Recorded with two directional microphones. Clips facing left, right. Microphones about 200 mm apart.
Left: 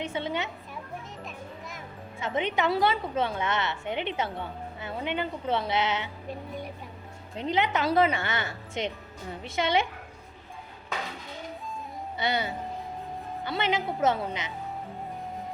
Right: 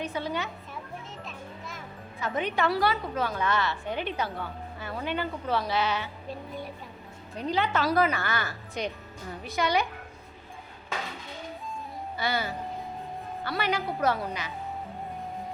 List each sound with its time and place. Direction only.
0.0 s a woman's voice: 25° left (ahead or behind)
2.1 s a woman's voice: 25° left (ahead or behind)
7.3 s a woman's voice: 20° left (ahead or behind)
12.1 s a woman's voice: 20° left (ahead or behind)